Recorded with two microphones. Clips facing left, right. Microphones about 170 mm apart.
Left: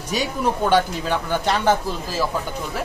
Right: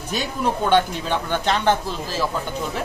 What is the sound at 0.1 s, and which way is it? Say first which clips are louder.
Speech: left 1 dB; 10° left (ahead or behind).